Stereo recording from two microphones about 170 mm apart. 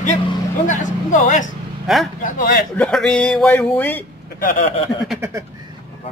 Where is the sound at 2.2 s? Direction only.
50° left (ahead or behind).